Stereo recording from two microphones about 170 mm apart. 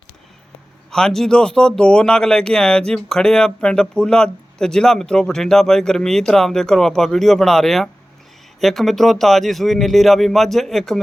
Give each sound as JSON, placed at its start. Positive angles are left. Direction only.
{"t": 0.9, "sound": "speech", "side_deg": 5}